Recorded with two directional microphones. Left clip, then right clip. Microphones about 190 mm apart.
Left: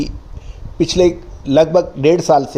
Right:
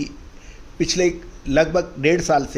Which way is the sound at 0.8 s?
20° left (ahead or behind).